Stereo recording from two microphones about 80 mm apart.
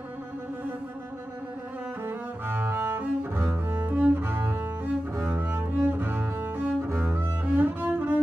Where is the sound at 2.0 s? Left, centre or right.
Right.